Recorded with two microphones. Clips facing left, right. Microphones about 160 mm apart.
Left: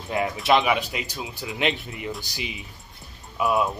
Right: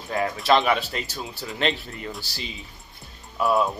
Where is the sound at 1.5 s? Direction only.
15° left (ahead or behind).